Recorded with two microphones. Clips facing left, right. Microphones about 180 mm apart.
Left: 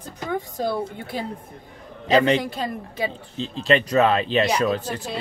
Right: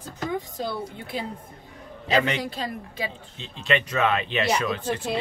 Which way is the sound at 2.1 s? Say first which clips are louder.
Left 6 dB; 35° left (ahead or behind).